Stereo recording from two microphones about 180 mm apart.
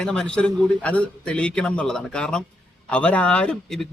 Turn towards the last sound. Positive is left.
turn(degrees=5)  # may be behind; listen again after turning